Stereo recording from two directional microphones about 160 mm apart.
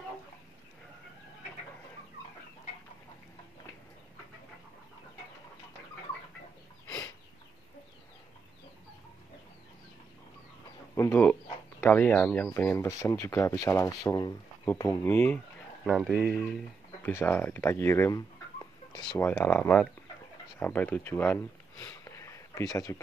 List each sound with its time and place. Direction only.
11.0 s speech: 15° left (ahead or behind)
15.8 s speech: centre (ahead or behind); by 19.1 s 25° left (ahead or behind)
19.1 s speech: 15° left (ahead or behind)